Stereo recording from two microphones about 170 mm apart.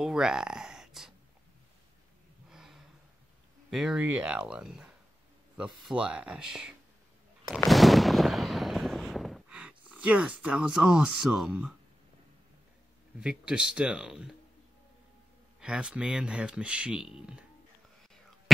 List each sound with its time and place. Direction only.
0.0 s a sound: 5° right (ahead or behind)
2.5 s gasp: 5° right (ahead or behind)
3.7 s speech: 5° right (ahead or behind)
7.4 s a sound: centre (ahead or behind)
13.2 s speech: 5° right (ahead or behind)
15.6 s speech: 5° right (ahead or behind)